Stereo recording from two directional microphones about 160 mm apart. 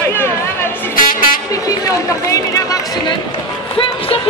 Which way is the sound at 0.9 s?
60° left (ahead or behind).